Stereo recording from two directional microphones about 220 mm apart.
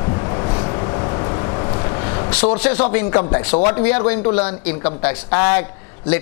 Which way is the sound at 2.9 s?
20° left (ahead or behind).